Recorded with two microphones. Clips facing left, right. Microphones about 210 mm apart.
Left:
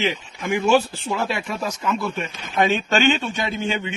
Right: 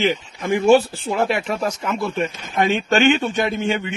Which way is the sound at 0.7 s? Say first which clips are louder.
Right 5 dB; 25° right (ahead or behind).